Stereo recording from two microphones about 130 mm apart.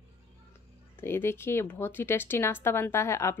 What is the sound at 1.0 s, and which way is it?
Speech, 20° left (ahead or behind).